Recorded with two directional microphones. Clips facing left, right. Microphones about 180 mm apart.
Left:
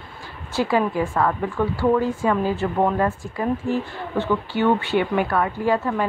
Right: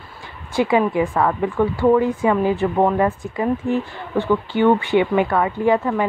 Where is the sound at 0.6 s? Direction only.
15° right (ahead or behind).